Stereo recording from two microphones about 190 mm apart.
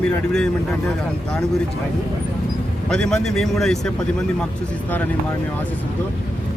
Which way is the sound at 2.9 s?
5° left (ahead or behind).